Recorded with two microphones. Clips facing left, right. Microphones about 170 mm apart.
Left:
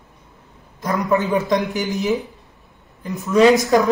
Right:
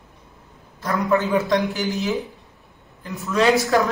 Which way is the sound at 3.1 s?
20° left (ahead or behind).